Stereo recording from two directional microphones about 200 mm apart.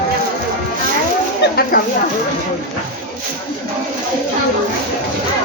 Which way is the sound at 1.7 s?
45° left (ahead or behind).